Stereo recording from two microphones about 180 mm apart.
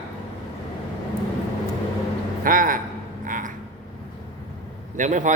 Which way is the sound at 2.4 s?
50° right (ahead or behind).